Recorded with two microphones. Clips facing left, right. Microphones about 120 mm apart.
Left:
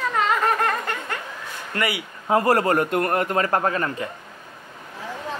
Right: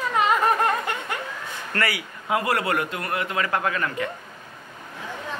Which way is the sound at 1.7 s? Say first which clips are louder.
Left 1 dB; 20° left (ahead or behind).